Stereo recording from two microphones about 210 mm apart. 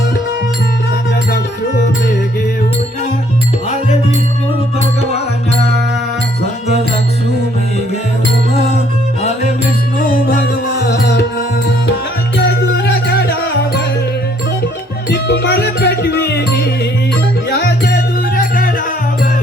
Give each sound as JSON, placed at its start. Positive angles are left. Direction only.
{"t": 10.2, "sound": "music", "side_deg": 50}
{"t": 12.4, "sound": "music", "side_deg": 55}
{"t": 15.1, "sound": "music", "side_deg": 55}